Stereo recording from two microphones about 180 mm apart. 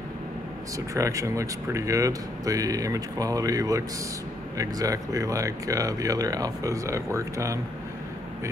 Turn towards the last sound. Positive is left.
turn(degrees=-15)  # may be behind; listen again after turning